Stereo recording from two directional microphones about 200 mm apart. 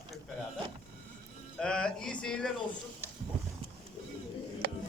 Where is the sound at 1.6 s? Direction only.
5° left (ahead or behind).